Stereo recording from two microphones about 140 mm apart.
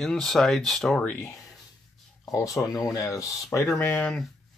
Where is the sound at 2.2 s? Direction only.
25° left (ahead or behind).